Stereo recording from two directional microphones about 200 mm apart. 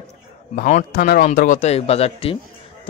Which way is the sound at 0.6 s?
40° left (ahead or behind).